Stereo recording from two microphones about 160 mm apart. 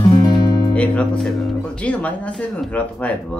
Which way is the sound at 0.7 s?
10° left (ahead or behind).